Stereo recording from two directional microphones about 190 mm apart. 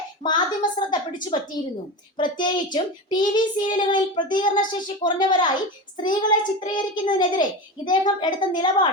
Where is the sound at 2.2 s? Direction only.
25° left (ahead or behind).